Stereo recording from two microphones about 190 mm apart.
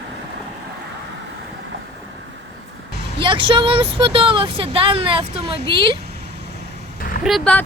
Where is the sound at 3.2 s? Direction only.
25° right (ahead or behind).